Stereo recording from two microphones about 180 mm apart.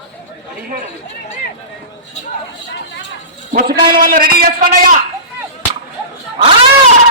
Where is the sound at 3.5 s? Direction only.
50° right (ahead or behind).